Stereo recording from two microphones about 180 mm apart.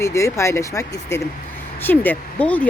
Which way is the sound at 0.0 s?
15° left (ahead or behind).